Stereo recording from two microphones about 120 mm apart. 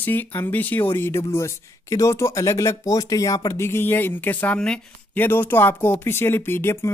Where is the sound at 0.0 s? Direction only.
15° left (ahead or behind).